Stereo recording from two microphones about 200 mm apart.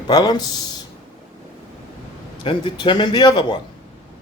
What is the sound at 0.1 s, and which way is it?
Speech, 20° left (ahead or behind).